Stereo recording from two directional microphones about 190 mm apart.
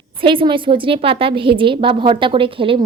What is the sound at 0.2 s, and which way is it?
A woman's voice, 25° right (ahead or behind).